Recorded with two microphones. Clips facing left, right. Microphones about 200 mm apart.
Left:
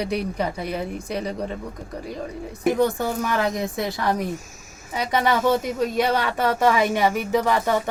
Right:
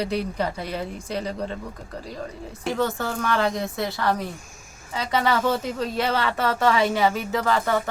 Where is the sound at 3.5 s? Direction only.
20° left (ahead or behind).